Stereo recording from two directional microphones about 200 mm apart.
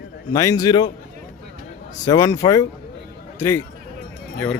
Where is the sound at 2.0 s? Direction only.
15° left (ahead or behind).